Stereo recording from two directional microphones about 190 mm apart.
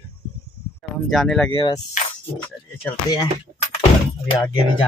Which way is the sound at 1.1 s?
Centre (ahead or behind).